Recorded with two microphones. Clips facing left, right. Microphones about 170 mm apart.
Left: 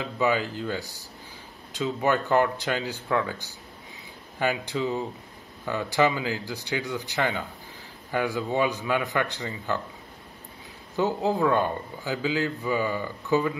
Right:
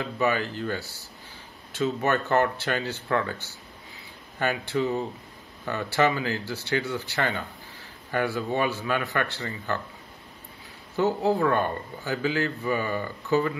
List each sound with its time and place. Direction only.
0.0 s a man's voice: 15° left (ahead or behind)
11.0 s a man's voice: 15° left (ahead or behind)